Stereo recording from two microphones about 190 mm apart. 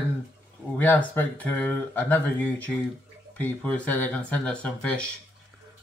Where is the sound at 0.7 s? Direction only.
10° left (ahead or behind).